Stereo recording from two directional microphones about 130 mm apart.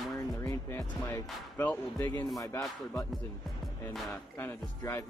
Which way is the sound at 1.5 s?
10° left (ahead or behind).